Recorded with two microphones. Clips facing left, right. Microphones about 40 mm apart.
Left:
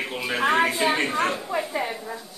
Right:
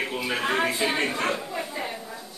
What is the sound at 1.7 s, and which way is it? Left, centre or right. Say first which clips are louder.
Speech: left 5 dB; left.